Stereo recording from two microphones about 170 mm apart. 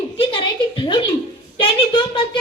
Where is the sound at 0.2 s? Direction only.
30° left (ahead or behind).